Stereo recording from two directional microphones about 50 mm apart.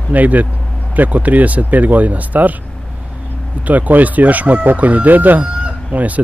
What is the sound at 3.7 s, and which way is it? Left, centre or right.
Chicken, right.